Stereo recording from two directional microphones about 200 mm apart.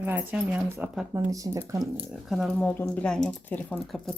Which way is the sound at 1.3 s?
15° right (ahead or behind).